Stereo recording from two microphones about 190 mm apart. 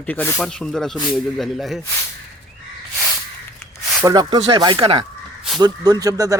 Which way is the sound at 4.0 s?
20° right (ahead or behind).